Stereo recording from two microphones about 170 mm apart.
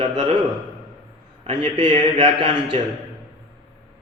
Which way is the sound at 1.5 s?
30° right (ahead or behind).